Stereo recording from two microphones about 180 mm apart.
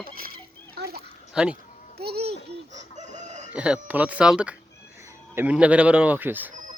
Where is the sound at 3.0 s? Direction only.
40° right (ahead or behind).